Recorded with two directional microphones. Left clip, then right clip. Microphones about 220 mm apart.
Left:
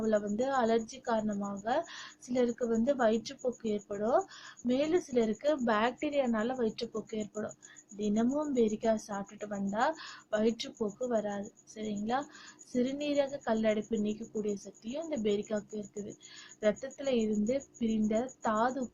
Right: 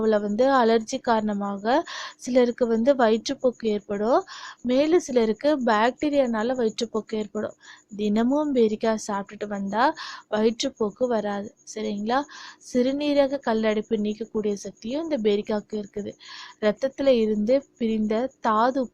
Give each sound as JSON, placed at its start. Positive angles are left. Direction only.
{"t": 0.0, "sound": "a woman's voice", "side_deg": -45}